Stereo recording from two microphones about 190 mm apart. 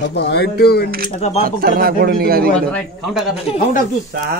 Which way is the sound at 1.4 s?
50° right (ahead or behind).